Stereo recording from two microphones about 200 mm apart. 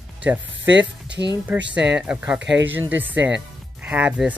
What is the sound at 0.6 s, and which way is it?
Speech, 65° right (ahead or behind).